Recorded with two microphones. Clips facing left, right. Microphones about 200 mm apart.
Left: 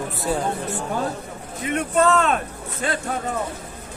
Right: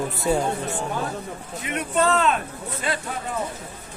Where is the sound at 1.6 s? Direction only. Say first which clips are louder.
Left 3 dB; 45° left (ahead or behind).